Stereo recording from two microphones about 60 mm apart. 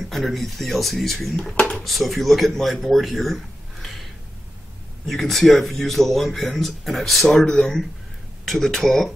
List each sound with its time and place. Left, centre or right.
0.1 s speech: centre
1.4 s speech: centre
1.9 s speech: centre
3.8 s a sound: centre
5.0 s speech: centre